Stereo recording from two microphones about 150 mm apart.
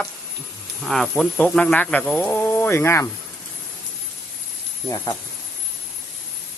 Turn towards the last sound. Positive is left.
turn(degrees=20)  # may be behind; listen again after turning